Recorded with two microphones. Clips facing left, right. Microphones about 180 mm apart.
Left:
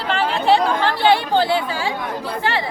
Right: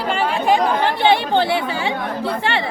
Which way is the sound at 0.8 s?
20° right (ahead or behind).